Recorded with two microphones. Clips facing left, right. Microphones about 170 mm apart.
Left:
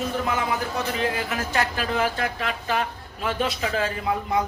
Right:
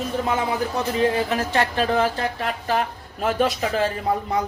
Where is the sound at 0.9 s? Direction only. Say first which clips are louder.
Right 6 dB; 30° right (ahead or behind).